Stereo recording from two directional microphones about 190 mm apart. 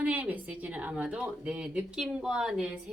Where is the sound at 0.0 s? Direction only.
10° right (ahead or behind).